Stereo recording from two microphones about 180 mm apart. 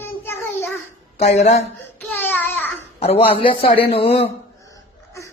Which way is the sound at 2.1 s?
10° left (ahead or behind).